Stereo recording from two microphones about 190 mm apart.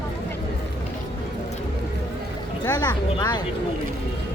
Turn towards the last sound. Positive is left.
turn(degrees=20)  # may be behind; listen again after turning